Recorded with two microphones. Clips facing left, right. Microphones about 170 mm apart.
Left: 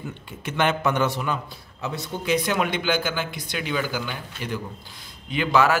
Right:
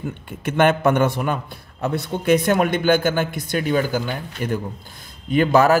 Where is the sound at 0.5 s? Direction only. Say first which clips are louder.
Right 6 dB; 55° right (ahead or behind).